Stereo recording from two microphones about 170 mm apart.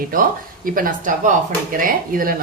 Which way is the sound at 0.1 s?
55° right (ahead or behind).